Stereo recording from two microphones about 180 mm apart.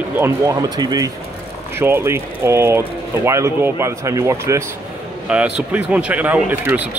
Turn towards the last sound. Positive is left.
turn(degrees=-10)  # may be behind; listen again after turning